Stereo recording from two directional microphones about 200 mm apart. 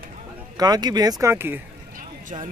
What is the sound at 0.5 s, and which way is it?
Speech, 20° right (ahead or behind).